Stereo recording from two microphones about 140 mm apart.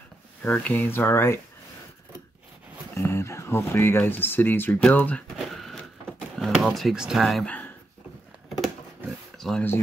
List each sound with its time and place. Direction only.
0.4 s speech: 10° left (ahead or behind)
2.9 s speech: 20° left (ahead or behind)
5.4 s a sound: centre (ahead or behind)
9.4 s speech: centre (ahead or behind)